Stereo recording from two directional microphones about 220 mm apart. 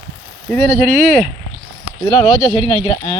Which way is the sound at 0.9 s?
35° right (ahead or behind).